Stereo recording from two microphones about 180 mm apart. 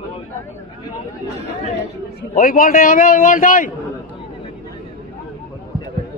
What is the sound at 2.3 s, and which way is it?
A man's voice, 50° left (ahead or behind).